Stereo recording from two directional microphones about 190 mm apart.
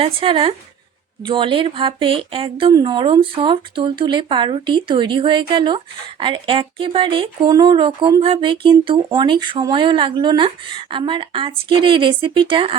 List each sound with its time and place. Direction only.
0.0 s speech: 30° right (ahead or behind)